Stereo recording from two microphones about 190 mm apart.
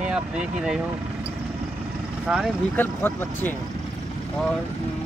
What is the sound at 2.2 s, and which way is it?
Speech, 5° right (ahead or behind).